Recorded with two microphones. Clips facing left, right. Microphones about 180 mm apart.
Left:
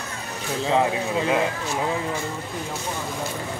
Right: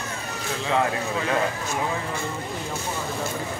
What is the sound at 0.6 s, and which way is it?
Speech, 30° left (ahead or behind).